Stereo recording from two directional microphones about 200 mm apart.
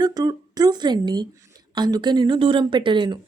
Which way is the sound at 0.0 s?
20° right (ahead or behind).